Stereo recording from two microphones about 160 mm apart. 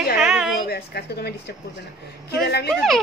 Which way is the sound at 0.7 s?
75° left (ahead or behind).